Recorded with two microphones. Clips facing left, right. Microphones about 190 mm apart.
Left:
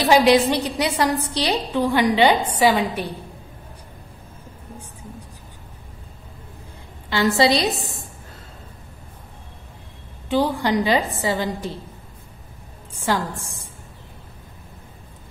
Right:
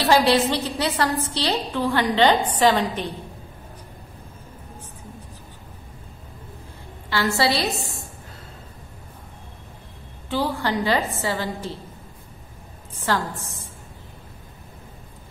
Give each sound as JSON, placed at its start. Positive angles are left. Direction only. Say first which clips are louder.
{"t": 0.0, "sound": "a woman's voice", "louder": "left 3 dB", "side_deg": 15}
{"t": 7.1, "sound": "a woman's voice", "louder": "left 4 dB", "side_deg": 20}
{"t": 10.3, "sound": "a woman's voice", "louder": "left 4 dB", "side_deg": 15}
{"t": 12.9, "sound": "a woman's voice", "louder": "left 1 dB", "side_deg": 15}